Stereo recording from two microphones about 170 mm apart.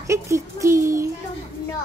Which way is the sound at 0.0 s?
15° right (ahead or behind).